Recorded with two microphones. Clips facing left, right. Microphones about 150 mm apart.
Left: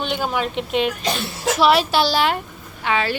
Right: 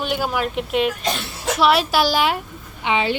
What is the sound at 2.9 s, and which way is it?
Speech, 20° right (ahead or behind).